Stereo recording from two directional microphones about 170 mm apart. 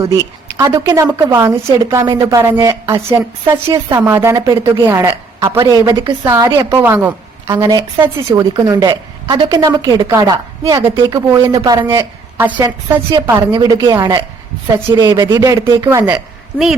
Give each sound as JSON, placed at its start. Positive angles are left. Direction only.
{"t": 0.0, "sound": "a woman's voice", "side_deg": -20}
{"t": 6.2, "sound": "a woman's voice", "side_deg": -15}